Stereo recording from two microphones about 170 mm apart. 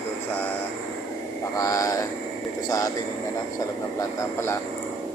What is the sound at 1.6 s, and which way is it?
Speech, 20° left (ahead or behind).